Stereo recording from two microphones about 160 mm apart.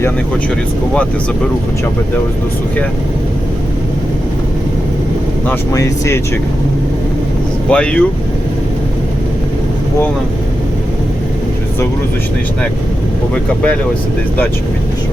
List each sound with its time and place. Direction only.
5.5 s speech: 20° left (ahead or behind)
7.7 s speech: 5° left (ahead or behind)
13.3 s speech: 5° left (ahead or behind)